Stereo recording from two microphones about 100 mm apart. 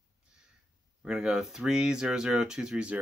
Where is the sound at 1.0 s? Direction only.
5° right (ahead or behind).